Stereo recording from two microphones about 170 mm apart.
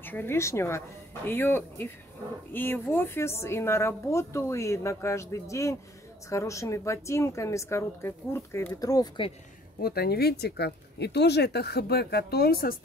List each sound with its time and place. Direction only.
0.0 s a woman's voice: 10° left (ahead or behind)
9.8 s speech: 65° left (ahead or behind)